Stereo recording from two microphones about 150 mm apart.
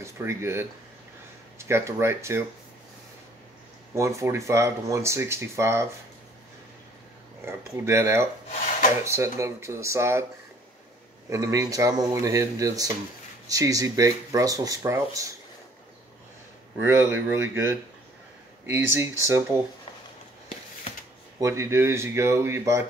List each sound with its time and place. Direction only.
0.0 s speech: 20° right (ahead or behind)
3.9 s speech: 20° right (ahead or behind)
7.4 s speech: 15° right (ahead or behind)
11.2 s speech: 20° right (ahead or behind)
16.8 s speech: 15° right (ahead or behind)
18.8 s speech: 15° right (ahead or behind)
21.4 s speech: 20° right (ahead or behind)